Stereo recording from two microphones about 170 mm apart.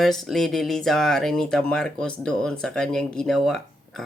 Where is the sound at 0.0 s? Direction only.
Centre (ahead or behind).